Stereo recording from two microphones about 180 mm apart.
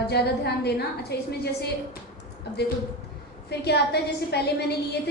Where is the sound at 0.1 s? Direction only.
65° left (ahead or behind).